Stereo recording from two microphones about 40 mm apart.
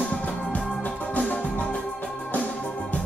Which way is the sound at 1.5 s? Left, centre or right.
Left.